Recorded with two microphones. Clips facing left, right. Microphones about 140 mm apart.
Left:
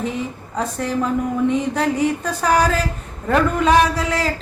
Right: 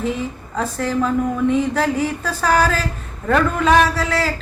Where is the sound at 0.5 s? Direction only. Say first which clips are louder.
Right 1 dB; 15° left (ahead or behind).